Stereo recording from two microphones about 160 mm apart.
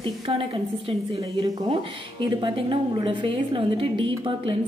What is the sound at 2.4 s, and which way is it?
A woman's voice, 30° right (ahead or behind).